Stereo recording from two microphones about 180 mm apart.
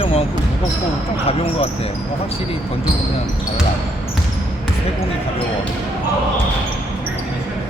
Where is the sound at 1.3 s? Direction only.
35° left (ahead or behind).